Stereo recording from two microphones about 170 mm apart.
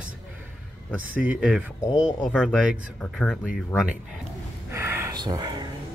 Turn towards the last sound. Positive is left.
turn(degrees=-25)  # may be behind; listen again after turning